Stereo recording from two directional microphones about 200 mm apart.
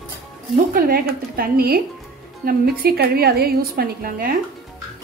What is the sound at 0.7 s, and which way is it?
A woman's voice, 45° right (ahead or behind).